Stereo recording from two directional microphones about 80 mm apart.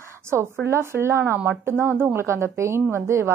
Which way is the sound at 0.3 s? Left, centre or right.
Right.